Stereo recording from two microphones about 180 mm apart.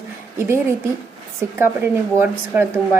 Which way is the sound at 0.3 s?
15° right (ahead or behind).